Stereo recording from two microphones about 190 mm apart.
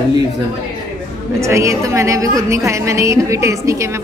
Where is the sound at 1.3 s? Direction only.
15° right (ahead or behind).